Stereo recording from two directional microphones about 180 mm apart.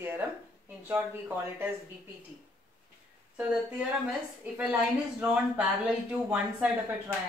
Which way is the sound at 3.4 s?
5° right (ahead or behind).